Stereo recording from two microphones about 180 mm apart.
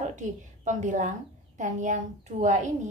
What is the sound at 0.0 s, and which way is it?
A woman's voice, 40° right (ahead or behind).